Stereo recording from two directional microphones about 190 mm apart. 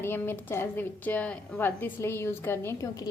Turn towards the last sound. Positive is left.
turn(degrees=15)  # may be behind; listen again after turning